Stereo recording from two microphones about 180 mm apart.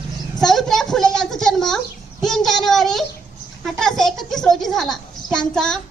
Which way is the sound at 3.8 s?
Centre (ahead or behind).